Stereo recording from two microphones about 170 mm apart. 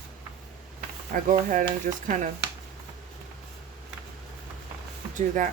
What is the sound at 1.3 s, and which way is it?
Speech, 50° right (ahead or behind).